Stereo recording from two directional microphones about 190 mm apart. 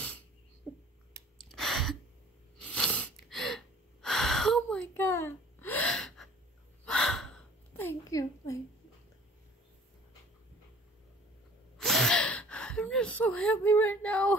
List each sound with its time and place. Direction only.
1.1 s sigh: 60° right (ahead or behind)
1.5 s gasp: centre (ahead or behind)
2.6 s a sound: 5° left (ahead or behind)
4.9 s gasp: 10° left (ahead or behind)
11.8 s gasp: centre (ahead or behind)